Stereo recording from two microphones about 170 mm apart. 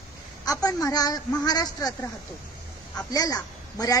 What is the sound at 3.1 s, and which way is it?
Speech, 20° left (ahead or behind).